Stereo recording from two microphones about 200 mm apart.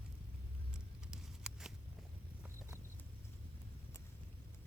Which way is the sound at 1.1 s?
5° right (ahead or behind).